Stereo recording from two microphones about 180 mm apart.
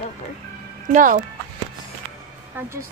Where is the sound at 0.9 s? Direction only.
45° right (ahead or behind).